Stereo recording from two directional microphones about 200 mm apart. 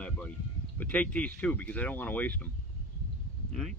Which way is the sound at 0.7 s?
10° left (ahead or behind).